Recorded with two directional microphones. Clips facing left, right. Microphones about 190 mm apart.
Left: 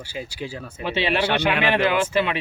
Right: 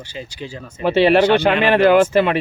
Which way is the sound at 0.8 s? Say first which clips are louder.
Right 10 dB; 50° right (ahead or behind).